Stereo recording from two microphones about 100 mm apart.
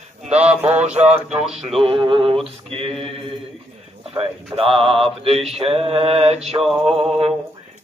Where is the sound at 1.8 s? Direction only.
65° right (ahead or behind).